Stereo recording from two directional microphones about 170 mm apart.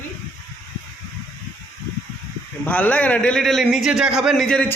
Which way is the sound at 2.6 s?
10° left (ahead or behind).